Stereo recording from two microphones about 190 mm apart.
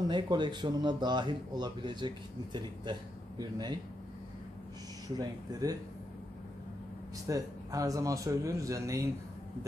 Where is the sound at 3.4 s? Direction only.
20° right (ahead or behind).